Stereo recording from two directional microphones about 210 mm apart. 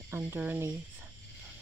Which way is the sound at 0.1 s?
10° right (ahead or behind).